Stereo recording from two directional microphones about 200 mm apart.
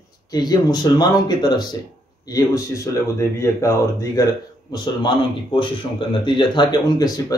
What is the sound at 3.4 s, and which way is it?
Speech, 15° left (ahead or behind).